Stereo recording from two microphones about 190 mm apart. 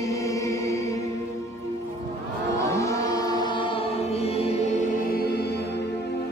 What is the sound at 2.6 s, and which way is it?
Choir, 15° left (ahead or behind).